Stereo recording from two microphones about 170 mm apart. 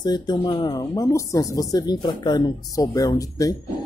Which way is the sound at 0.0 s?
25° left (ahead or behind).